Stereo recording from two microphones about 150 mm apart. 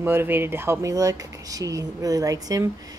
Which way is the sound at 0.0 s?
15° right (ahead or behind).